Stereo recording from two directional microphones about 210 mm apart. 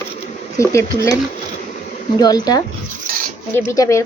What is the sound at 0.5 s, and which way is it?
Speech, 15° left (ahead or behind).